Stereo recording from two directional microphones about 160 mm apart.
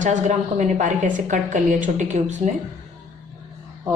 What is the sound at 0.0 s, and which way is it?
A woman's voice, 50° right (ahead or behind).